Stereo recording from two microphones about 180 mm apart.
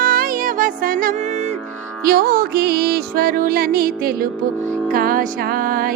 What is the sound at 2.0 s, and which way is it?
Music, 55° right (ahead or behind).